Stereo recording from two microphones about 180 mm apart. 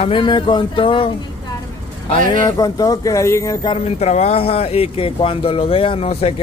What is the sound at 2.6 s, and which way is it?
Speech, 20° left (ahead or behind).